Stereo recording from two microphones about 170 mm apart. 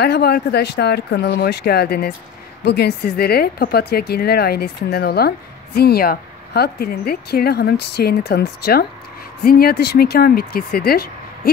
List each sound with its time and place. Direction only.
0.0 s speech: 70° left (ahead or behind)